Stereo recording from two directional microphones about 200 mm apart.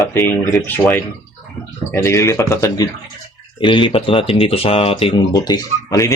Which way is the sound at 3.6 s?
25° left (ahead or behind).